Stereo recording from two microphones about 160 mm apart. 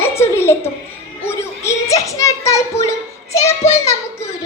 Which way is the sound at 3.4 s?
15° left (ahead or behind).